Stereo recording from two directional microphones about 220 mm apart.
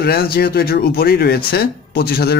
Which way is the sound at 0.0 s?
45° left (ahead or behind).